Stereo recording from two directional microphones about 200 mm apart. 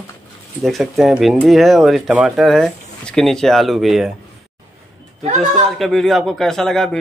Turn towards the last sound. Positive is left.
turn(degrees=0)  # may be behind; listen again after turning